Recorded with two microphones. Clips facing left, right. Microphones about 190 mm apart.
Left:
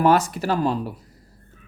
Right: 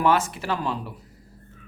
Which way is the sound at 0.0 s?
40° left (ahead or behind).